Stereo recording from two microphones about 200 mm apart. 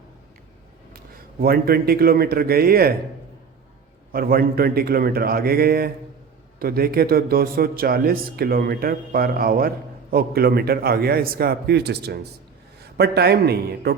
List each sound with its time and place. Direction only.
0.9 s a man's voice: 50° right (ahead or behind)
4.1 s a man's voice: 50° right (ahead or behind)